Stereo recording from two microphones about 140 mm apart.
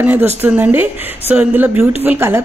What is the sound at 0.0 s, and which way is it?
A woman's voice, 10° right (ahead or behind).